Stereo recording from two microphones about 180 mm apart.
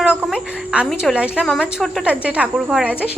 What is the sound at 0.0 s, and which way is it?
A woman's voice, 5° right (ahead or behind).